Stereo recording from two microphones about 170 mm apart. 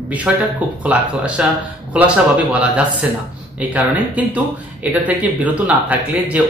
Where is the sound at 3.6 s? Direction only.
10° right (ahead or behind).